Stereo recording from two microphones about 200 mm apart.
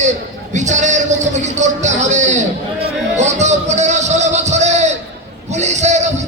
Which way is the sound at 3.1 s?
35° right (ahead or behind).